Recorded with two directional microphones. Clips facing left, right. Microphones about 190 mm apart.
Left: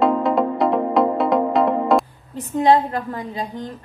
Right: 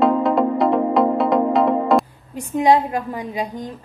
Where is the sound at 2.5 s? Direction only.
10° right (ahead or behind).